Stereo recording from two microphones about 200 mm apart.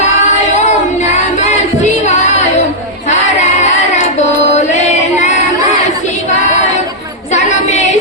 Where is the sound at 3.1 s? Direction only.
35° left (ahead or behind).